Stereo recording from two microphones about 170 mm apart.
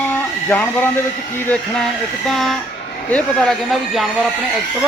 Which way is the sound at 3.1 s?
Centre (ahead or behind).